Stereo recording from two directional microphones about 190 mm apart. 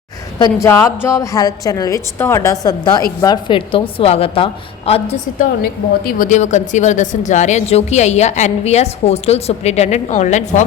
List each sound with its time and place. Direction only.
0.3 s a woman's voice: 20° left (ahead or behind)
6.1 s speech: 45° left (ahead or behind)